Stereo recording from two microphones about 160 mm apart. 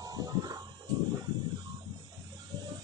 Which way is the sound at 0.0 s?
20° right (ahead or behind).